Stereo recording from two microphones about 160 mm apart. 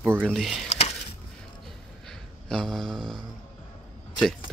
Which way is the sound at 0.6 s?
40° left (ahead or behind).